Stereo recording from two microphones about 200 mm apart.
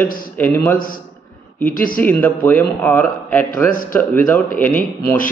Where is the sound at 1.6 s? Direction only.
45° left (ahead or behind).